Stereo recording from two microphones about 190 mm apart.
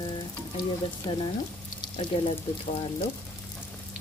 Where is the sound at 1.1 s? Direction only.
25° left (ahead or behind).